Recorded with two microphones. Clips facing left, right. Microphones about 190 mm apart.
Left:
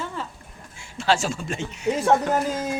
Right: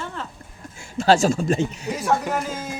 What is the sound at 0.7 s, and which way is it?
Speech, 40° right (ahead or behind).